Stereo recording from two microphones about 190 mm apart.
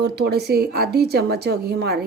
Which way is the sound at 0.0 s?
55° right (ahead or behind).